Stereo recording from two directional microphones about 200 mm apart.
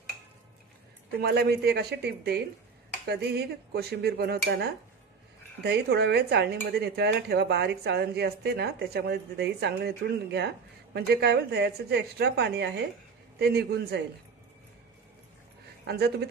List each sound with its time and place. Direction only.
1.2 s speech: 55° right (ahead or behind)